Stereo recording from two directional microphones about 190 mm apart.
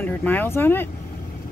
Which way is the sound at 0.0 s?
10° left (ahead or behind).